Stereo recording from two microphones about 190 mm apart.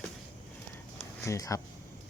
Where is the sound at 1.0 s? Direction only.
15° left (ahead or behind).